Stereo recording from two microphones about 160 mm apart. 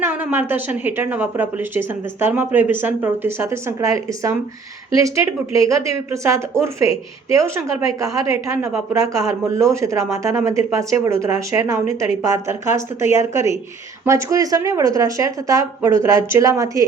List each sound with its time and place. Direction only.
0.0 s speech: 15° right (ahead or behind)